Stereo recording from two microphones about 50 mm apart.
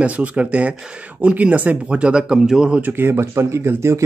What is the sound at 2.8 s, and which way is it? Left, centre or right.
Speech, right.